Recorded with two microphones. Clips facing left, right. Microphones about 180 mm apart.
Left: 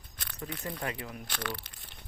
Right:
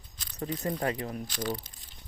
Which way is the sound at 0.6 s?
30° right (ahead or behind).